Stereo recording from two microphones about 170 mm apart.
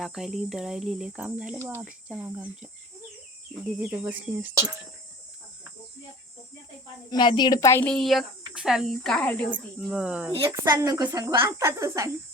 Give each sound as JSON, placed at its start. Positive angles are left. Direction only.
{"t": 0.0, "sound": "speech", "side_deg": 0}
{"t": 3.8, "sound": "speech", "side_deg": -10}
{"t": 7.1, "sound": "a woman's voice", "side_deg": 25}
{"t": 7.9, "sound": "speech", "side_deg": 0}
{"t": 10.0, "sound": "speech", "side_deg": -5}
{"t": 10.5, "sound": "speech", "side_deg": -20}